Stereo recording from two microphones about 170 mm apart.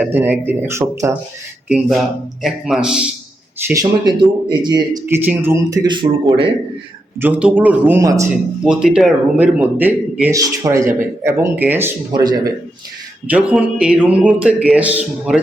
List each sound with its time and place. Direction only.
0.0 s speech: 10° right (ahead or behind)
1.6 s a man's voice: 5° right (ahead or behind)
3.7 s speech: 20° right (ahead or behind)
5.0 s speech: 10° right (ahead or behind); by 6.3 s 25° right (ahead or behind)
7.2 s speech: 10° right (ahead or behind)
8.6 s speech: 5° right (ahead or behind)
12.1 s speech: 25° right (ahead or behind)
13.2 s speech: 10° right (ahead or behind)